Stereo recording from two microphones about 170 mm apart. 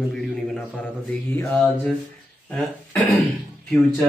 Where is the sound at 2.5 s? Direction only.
5° left (ahead or behind).